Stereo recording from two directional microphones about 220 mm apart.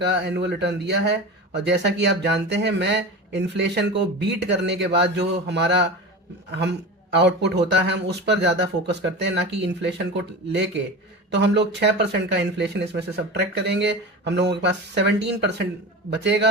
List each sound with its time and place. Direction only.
0.0 s speech: 50° right (ahead or behind)